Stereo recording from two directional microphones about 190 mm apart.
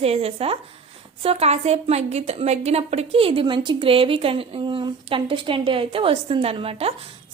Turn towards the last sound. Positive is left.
turn(degrees=-30)  # may be behind; listen again after turning